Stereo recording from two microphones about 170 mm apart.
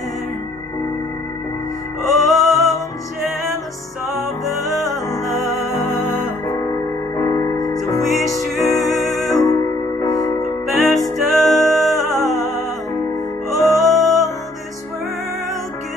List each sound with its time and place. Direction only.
2.0 s music: centre (ahead or behind)
4.1 s music: centre (ahead or behind)
7.2 s music: 25° left (ahead or behind)
8.7 s music: centre (ahead or behind)
9.3 s music: 20° left (ahead or behind)
10.7 s music: centre (ahead or behind)